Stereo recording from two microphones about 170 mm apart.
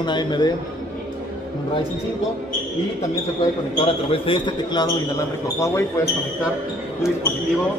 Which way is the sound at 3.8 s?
30° left (ahead or behind).